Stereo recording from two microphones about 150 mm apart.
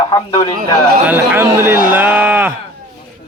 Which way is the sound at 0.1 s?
30° left (ahead or behind).